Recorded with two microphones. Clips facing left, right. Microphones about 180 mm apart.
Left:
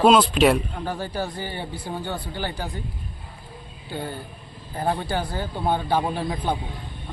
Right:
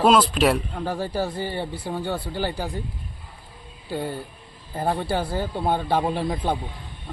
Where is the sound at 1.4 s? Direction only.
30° right (ahead or behind).